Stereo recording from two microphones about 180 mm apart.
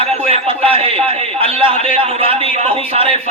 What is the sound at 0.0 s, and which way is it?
A man's voice, 30° right (ahead or behind).